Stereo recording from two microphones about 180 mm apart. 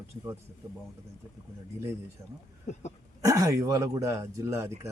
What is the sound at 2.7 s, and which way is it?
Cough, 40° left (ahead or behind).